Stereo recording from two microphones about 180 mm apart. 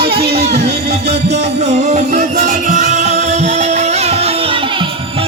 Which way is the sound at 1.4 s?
40° right (ahead or behind).